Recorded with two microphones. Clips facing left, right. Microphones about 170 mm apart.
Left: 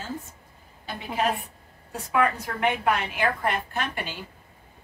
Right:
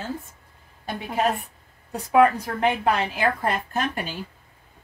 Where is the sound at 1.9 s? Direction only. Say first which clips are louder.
Right 6 dB; 35° right (ahead or behind).